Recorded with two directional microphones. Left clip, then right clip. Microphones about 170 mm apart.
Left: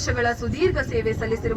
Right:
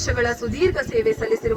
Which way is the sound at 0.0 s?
50° left (ahead or behind).